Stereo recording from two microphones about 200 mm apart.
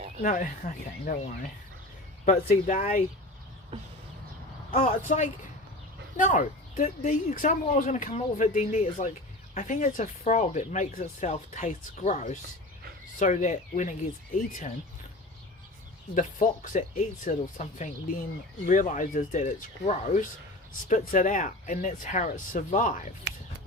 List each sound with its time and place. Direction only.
0.2 s speech: 40° left (ahead or behind)
2.2 s speech: 35° left (ahead or behind)
4.7 s speech: 35° left (ahead or behind)
16.1 s speech: 40° left (ahead or behind)